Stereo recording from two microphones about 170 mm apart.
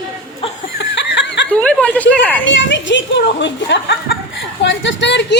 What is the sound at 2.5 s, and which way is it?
Speech, 90° left.